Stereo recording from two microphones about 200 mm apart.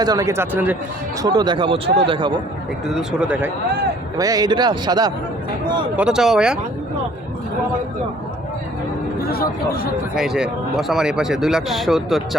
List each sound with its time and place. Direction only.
0.0 s speech: 15° right (ahead or behind)
1.2 s a man's voice: 20° right (ahead or behind)
2.9 s speech: 5° right (ahead or behind)
4.2 s a man's voice: 20° right (ahead or behind)
6.0 s speech: 5° right (ahead or behind)
9.3 s speech: 50° left (ahead or behind)
10.2 s speech: 5° right (ahead or behind)